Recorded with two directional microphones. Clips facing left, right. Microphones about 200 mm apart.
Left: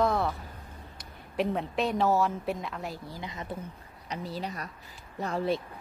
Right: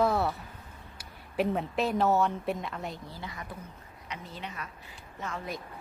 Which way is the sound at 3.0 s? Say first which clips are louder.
Left 3 dB; 15° left (ahead or behind).